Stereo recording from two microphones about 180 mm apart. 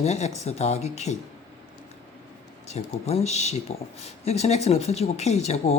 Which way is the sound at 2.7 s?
35° left (ahead or behind).